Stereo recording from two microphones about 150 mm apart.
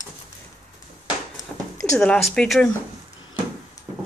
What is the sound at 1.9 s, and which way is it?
Speech, 5° left (ahead or behind).